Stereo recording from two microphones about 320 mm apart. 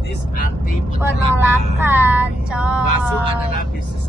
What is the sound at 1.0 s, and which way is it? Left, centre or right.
Child singing, centre.